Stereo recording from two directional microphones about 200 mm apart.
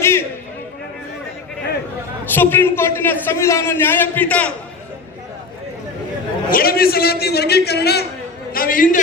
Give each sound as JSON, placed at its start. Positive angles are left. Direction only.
{"t": 0.0, "sound": "a sound", "side_deg": 10}
{"t": 2.3, "sound": "a man's voice", "side_deg": 10}
{"t": 6.5, "sound": "a man's voice", "side_deg": 50}